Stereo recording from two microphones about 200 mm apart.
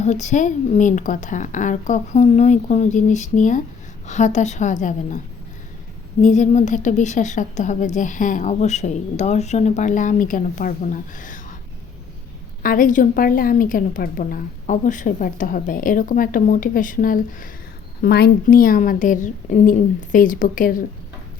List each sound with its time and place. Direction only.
0.0 s a woman's voice: 35° left (ahead or behind)
6.2 s a woman's voice: 35° left (ahead or behind)
12.6 s a woman's voice: 45° left (ahead or behind)
18.0 s a woman's voice: 50° left (ahead or behind)